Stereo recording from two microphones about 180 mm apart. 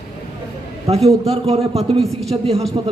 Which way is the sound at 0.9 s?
35° right (ahead or behind).